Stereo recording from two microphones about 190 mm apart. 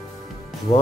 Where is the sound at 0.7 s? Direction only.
35° left (ahead or behind).